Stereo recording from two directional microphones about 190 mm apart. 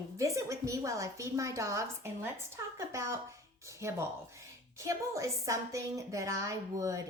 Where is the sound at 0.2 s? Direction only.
15° right (ahead or behind).